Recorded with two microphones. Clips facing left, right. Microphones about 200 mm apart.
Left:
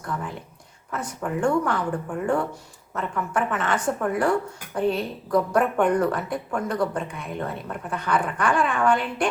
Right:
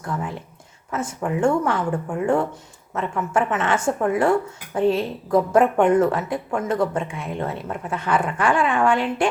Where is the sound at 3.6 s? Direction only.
25° right (ahead or behind).